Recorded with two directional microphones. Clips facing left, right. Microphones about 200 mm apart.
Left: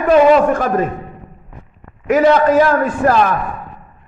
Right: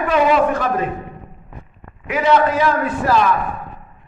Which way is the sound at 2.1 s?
45° left (ahead or behind).